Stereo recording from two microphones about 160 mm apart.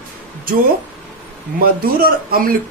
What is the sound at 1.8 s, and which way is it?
Speech, 65° right (ahead or behind).